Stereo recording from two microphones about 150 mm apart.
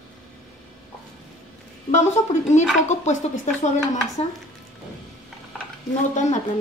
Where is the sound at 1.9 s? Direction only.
50° left (ahead or behind).